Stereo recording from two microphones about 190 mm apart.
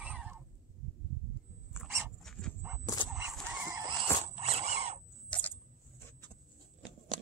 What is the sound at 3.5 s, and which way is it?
Chicken, 15° right (ahead or behind).